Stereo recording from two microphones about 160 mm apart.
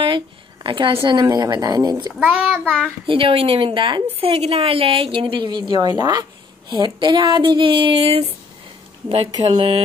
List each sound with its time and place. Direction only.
0.7 s speech: 30° right (ahead or behind)
2.1 s child singing: 5° right (ahead or behind)
3.1 s a woman's voice: 35° right (ahead or behind)